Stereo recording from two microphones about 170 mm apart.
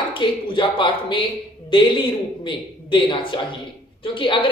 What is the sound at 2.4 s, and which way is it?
A woman's voice, 30° left (ahead or behind).